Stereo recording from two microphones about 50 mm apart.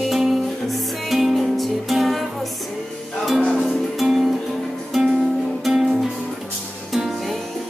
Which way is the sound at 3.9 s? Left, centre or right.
Centre.